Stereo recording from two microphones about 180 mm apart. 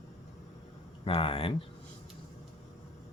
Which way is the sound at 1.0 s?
30° left (ahead or behind).